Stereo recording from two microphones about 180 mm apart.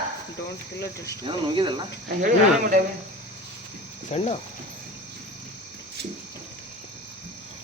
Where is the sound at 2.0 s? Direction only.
50° right (ahead or behind).